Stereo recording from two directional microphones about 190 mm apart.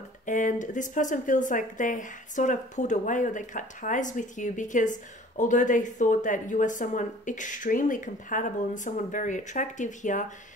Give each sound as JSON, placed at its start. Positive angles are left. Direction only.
{"t": 0.2, "sound": "a woman's voice", "side_deg": 40}